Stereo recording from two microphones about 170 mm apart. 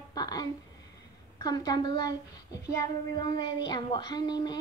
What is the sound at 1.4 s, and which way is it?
Child singing, 25° left (ahead or behind).